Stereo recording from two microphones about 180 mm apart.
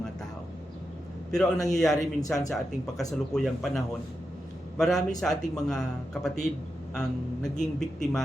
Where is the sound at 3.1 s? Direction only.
Centre (ahead or behind).